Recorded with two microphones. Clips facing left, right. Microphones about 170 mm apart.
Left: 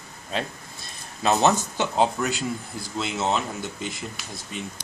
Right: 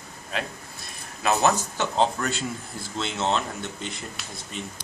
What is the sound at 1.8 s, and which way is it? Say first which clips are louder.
A man's voice: left 1 dB; 10° left (ahead or behind).